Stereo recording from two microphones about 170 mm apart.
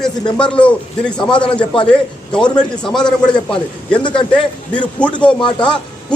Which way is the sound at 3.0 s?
25° left (ahead or behind).